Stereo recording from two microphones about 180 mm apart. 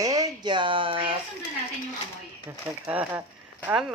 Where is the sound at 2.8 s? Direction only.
10° right (ahead or behind).